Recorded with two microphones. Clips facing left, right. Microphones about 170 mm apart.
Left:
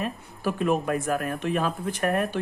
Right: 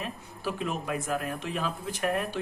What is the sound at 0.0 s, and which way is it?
Speech, 50° left (ahead or behind).